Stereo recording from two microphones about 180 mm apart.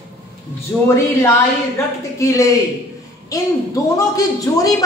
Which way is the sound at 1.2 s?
15° left (ahead or behind).